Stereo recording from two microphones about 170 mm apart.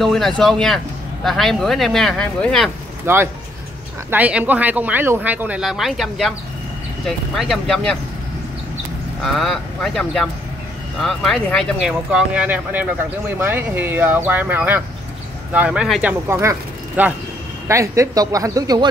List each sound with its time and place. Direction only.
0.0 s speech: centre (ahead or behind)
3.1 s speech: 15° right (ahead or behind); by 8.0 s 5° left (ahead or behind)
9.2 s speech: centre (ahead or behind); by 18.9 s 20° right (ahead or behind)